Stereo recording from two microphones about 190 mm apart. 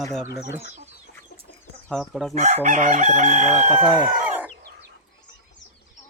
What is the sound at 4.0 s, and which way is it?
Chicken, 5° right (ahead or behind).